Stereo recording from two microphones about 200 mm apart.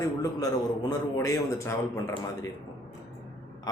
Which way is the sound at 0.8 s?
15° left (ahead or behind).